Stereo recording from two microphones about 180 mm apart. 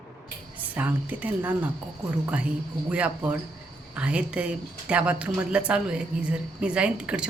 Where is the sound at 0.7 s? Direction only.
10° right (ahead or behind).